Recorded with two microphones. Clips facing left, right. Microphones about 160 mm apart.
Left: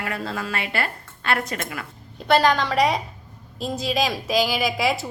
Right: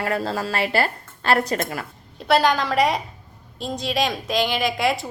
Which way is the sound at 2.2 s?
Centre (ahead or behind).